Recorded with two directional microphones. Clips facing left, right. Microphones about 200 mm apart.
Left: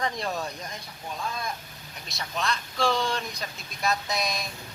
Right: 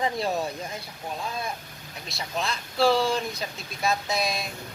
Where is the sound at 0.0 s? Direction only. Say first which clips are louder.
Right 4 dB; 30° right (ahead or behind).